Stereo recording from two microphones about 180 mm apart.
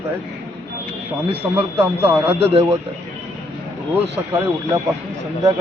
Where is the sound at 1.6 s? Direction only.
15° right (ahead or behind).